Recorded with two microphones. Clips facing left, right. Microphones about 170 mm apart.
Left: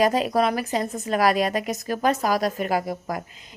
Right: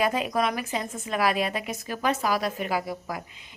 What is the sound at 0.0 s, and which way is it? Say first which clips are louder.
A woman's voice: left 5 dB; 35° left (ahead or behind).